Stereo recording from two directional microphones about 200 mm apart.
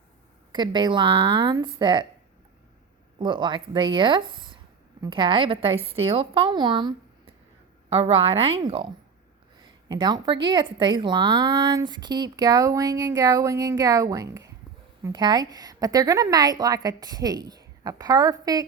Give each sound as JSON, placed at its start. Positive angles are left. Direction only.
{"t": 0.5, "sound": "speech", "side_deg": -20}
{"t": 3.2, "sound": "speech", "side_deg": -25}
{"t": 9.9, "sound": "speech", "side_deg": -20}